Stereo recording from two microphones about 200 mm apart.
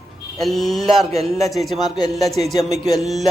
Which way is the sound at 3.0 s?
Centre (ahead or behind).